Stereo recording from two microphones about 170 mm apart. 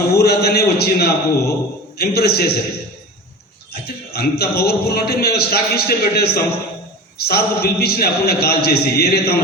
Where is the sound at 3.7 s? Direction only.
70° left (ahead or behind).